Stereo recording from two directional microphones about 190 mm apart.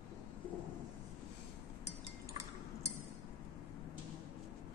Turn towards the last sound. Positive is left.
turn(degrees=-15)  # may be behind; listen again after turning